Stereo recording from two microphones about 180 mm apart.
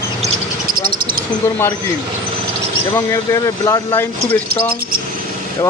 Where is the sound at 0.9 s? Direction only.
55° right (ahead or behind).